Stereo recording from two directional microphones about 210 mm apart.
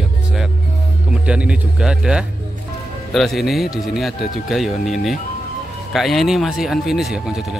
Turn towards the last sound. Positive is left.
turn(degrees=0)  # may be behind; listen again after turning